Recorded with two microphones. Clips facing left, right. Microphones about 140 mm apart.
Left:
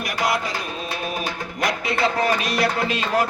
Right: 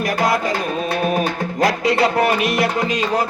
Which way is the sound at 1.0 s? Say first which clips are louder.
Right 9 dB; 45° right (ahead or behind).